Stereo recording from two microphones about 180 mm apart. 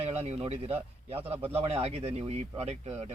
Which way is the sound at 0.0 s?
35° right (ahead or behind).